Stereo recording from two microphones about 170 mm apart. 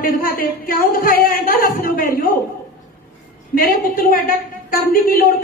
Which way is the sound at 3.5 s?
55° left (ahead or behind).